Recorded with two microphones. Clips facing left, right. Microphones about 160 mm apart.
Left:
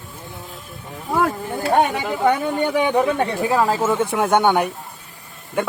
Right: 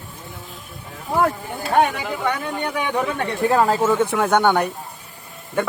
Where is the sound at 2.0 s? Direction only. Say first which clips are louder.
Left 5 dB; 25° left (ahead or behind).